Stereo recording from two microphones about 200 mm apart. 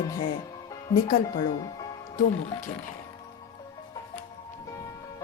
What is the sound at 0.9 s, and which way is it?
Speech, 45° left (ahead or behind).